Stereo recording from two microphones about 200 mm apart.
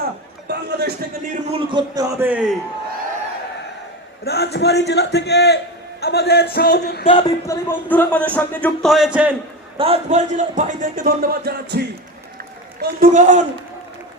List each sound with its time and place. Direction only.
0.4 s a man's voice: 55° right (ahead or behind)
1.5 s a man's voice: 20° right (ahead or behind)
4.2 s a man's voice: 55° left (ahead or behind)
7.1 s speech: 20° left (ahead or behind)
8.4 s music: 5° left (ahead or behind)
9.7 s a man's voice: 30° right (ahead or behind); by 11.9 s 55° right (ahead or behind)
12.8 s a man's voice: 45° right (ahead or behind)